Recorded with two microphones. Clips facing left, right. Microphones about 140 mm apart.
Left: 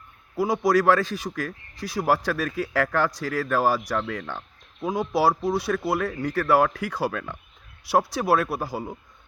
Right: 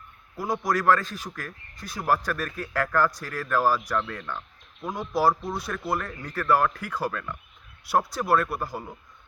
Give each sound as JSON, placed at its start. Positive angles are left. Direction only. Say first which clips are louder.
{"t": 0.3, "sound": "a man's voice", "louder": "left 6 dB", "side_deg": 85}